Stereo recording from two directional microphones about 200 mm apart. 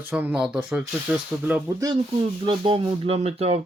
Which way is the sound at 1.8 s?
25° right (ahead or behind).